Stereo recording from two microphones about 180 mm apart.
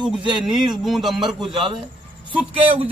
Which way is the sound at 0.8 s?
Centre (ahead or behind).